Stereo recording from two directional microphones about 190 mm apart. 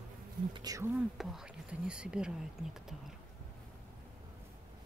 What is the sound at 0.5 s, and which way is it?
Speech, 20° right (ahead or behind).